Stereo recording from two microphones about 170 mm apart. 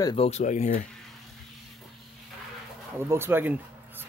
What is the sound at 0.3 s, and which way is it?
Speech, 45° left (ahead or behind).